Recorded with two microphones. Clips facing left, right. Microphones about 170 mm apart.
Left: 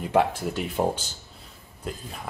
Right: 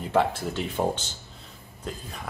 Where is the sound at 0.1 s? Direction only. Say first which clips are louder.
Left 1 dB; 15° left (ahead or behind).